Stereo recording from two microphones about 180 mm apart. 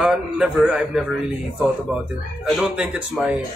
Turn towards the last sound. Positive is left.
turn(degrees=-5)  # may be behind; listen again after turning